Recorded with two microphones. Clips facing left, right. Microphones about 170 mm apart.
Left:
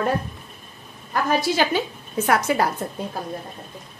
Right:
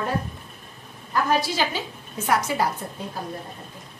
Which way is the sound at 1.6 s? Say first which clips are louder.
Left 5 dB; 60° left (ahead or behind).